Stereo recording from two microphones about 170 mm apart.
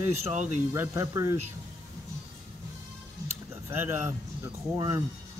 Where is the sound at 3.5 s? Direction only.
15° right (ahead or behind).